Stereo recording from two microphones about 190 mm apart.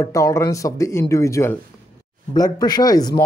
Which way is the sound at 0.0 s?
15° left (ahead or behind).